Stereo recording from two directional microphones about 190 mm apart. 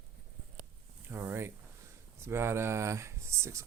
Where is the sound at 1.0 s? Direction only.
10° right (ahead or behind).